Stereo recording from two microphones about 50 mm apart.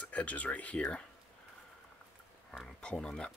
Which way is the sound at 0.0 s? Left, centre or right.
Left.